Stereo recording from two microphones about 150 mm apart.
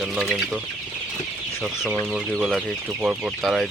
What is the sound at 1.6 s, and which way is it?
Speech, 5° right (ahead or behind).